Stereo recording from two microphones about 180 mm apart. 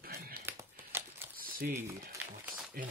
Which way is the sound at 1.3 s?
55° right (ahead or behind).